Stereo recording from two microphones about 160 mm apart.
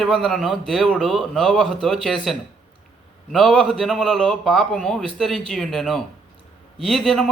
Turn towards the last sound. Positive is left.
turn(degrees=0)  # may be behind; listen again after turning